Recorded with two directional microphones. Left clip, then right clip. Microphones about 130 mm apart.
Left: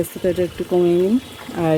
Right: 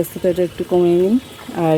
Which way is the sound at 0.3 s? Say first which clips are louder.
Right 3 dB; 20° right (ahead or behind).